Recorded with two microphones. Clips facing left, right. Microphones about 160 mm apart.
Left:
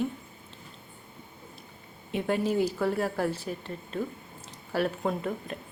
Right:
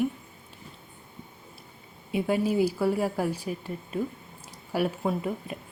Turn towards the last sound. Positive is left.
turn(degrees=-5)  # may be behind; listen again after turning